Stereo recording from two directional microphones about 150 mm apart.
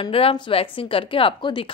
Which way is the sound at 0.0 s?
40° left (ahead or behind).